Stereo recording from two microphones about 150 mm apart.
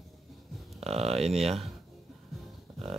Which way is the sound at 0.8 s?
45° right (ahead or behind).